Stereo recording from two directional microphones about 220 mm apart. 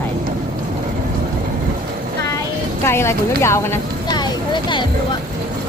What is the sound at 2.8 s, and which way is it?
Speech, 10° left (ahead or behind).